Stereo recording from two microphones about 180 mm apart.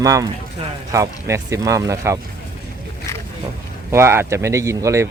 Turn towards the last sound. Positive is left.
turn(degrees=-15)  # may be behind; listen again after turning